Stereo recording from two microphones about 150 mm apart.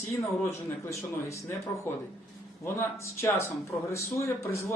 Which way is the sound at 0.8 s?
20° left (ahead or behind).